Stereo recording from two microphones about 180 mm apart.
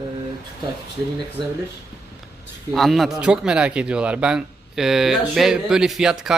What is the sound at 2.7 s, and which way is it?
A man's voice, centre (ahead or behind).